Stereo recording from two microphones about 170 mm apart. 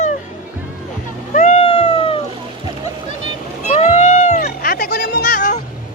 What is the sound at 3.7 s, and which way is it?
Music, 40° left (ahead or behind).